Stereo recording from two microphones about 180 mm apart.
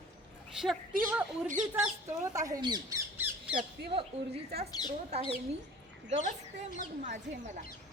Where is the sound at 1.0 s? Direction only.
5° right (ahead or behind).